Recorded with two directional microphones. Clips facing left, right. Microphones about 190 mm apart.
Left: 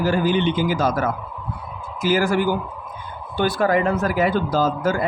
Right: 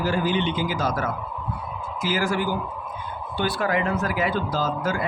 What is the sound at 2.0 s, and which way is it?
Speech, 50° left (ahead or behind).